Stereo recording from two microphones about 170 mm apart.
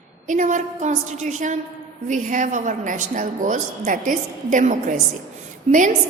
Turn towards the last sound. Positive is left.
turn(degrees=-40)  # may be behind; listen again after turning